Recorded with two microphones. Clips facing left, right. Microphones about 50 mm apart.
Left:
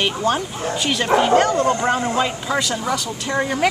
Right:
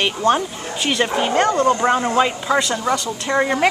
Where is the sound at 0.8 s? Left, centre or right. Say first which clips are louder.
Left 1 dB; centre.